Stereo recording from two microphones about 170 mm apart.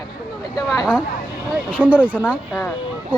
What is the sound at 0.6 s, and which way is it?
A man's voice, 5° right (ahead or behind).